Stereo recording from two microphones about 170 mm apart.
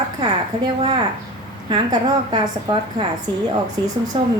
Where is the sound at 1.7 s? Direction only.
25° right (ahead or behind).